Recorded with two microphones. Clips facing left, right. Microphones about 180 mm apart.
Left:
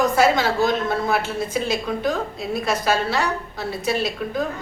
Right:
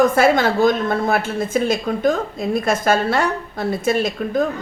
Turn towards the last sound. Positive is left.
turn(degrees=-50)  # may be behind; listen again after turning